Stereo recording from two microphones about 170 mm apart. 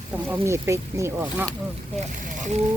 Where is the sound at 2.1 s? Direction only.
50° right (ahead or behind).